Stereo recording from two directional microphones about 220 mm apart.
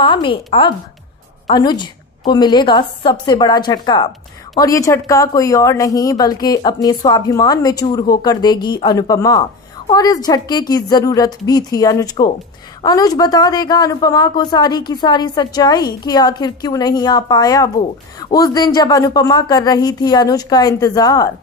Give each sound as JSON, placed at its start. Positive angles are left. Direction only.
{"t": 0.0, "sound": "a woman's voice", "side_deg": 20}